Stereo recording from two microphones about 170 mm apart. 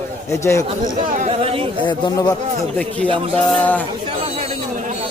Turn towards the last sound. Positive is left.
turn(degrees=10)  # may be behind; listen again after turning